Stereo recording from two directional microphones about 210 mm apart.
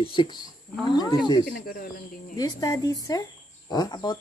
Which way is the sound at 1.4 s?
45° left (ahead or behind).